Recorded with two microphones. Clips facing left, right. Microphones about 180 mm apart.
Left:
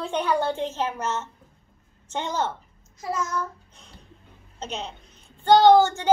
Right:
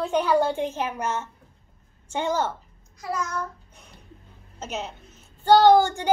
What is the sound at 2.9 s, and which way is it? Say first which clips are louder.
Speech: left 1 dB; 25° left (ahead or behind).